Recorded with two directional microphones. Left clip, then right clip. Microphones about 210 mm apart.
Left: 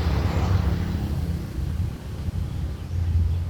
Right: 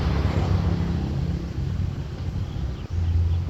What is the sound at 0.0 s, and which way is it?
Vehicle, 65° left (ahead or behind).